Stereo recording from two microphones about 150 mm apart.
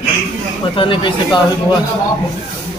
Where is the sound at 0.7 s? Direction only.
35° left (ahead or behind).